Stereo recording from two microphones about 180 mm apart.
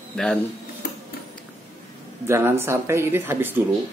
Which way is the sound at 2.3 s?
15° right (ahead or behind).